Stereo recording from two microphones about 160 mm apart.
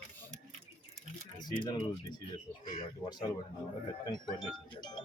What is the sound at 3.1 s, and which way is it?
Speech, 25° left (ahead or behind).